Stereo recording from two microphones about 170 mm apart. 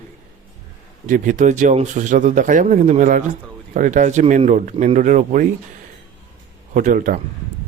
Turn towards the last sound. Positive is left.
turn(degrees=-50)  # may be behind; listen again after turning